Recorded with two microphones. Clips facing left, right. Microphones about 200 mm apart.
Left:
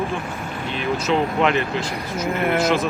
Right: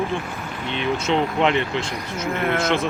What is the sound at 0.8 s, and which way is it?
Speech, 25° right (ahead or behind).